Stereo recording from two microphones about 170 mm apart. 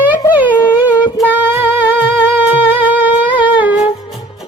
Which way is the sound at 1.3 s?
10° right (ahead or behind).